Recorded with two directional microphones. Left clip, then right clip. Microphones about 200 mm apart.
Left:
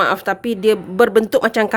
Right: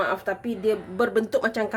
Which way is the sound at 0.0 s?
60° left (ahead or behind).